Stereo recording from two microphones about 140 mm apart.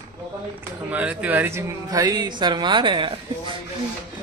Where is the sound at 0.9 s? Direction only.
10° right (ahead or behind); by 3.5 s 35° right (ahead or behind).